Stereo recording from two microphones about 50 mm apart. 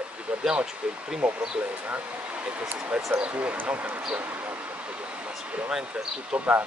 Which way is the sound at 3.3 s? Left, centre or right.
Right.